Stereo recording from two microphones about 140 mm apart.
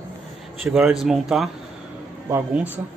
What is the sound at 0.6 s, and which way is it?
Speech, centre (ahead or behind).